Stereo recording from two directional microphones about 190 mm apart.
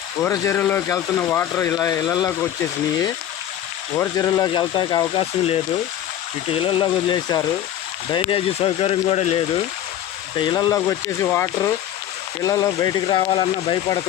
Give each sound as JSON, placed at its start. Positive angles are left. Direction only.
{"t": 0.2, "sound": "speech", "side_deg": 10}
{"t": 3.9, "sound": "speech", "side_deg": 15}